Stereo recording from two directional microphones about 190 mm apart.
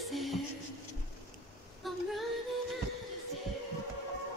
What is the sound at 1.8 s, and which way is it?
Female singing, centre (ahead or behind).